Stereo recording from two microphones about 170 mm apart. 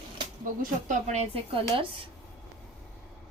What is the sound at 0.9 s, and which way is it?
A woman's voice, 40° right (ahead or behind).